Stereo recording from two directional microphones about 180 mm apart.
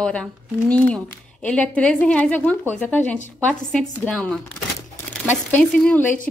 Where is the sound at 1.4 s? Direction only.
5° left (ahead or behind).